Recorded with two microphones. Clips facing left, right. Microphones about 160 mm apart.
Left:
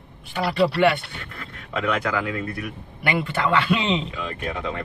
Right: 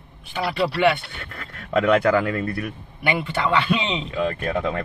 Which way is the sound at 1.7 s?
45° right (ahead or behind).